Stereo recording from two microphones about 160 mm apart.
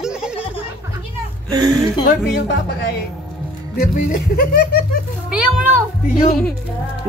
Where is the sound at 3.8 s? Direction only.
70° left (ahead or behind).